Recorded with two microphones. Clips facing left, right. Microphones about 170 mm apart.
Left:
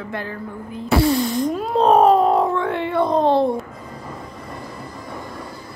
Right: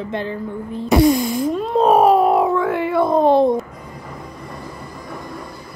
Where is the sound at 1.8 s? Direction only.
10° right (ahead or behind).